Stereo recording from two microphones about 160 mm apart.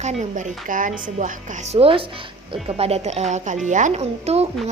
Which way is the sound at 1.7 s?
35° right (ahead or behind).